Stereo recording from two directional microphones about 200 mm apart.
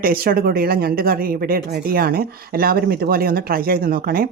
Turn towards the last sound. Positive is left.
turn(degrees=-45)  # may be behind; listen again after turning